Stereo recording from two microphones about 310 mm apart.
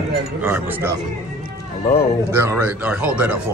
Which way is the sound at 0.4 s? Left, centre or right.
Centre.